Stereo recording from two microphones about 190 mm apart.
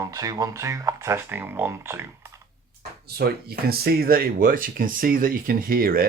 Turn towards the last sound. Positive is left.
turn(degrees=-50)  # may be behind; listen again after turning